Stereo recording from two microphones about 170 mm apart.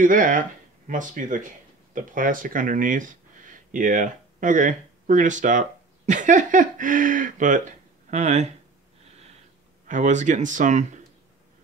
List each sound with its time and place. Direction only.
0.0 s speech: 50° right (ahead or behind)
9.8 s speech: 45° right (ahead or behind)